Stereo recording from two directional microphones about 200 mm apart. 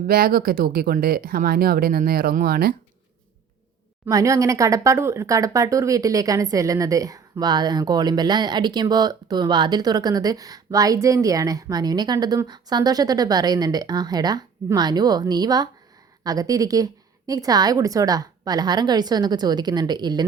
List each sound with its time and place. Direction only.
0.1 s speech: 45° right (ahead or behind)
4.0 s speech: 15° right (ahead or behind)